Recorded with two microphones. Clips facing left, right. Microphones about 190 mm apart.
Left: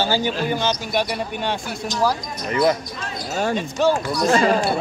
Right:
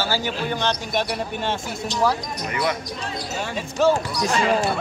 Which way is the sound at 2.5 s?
35° left (ahead or behind).